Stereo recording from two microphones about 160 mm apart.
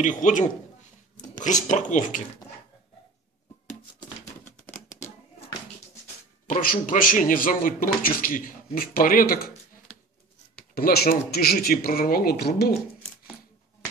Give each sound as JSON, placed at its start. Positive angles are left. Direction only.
{"t": 0.0, "sound": "speech", "side_deg": 50}
{"t": 4.7, "sound": "a sound", "side_deg": 55}
{"t": 6.4, "sound": "a man's voice", "side_deg": 60}
{"t": 10.7, "sound": "speech", "side_deg": 75}